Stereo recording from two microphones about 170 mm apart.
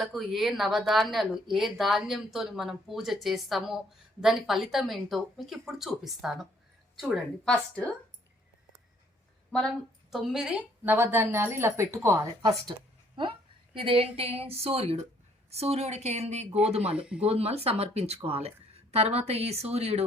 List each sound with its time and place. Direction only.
0.0 s a woman's voice: centre (ahead or behind)
9.5 s a woman's voice: 5° left (ahead or behind); by 12.5 s 15° right (ahead or behind)
12.7 s speech: 30° right (ahead or behind)